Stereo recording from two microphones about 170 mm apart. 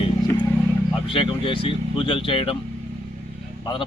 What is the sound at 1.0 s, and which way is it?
Speech, 30° left (ahead or behind).